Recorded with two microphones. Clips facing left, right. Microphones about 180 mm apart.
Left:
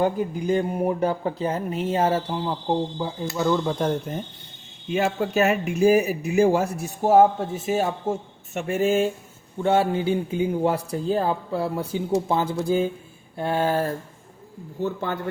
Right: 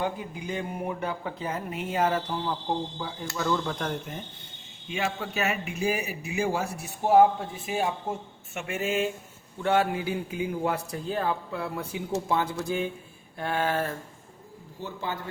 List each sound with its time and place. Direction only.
0.0 s speech: 45° left (ahead or behind); by 3.9 s 25° left (ahead or behind)
4.9 s a man's voice: 45° left (ahead or behind)
14.8 s a man's voice: 55° left (ahead or behind)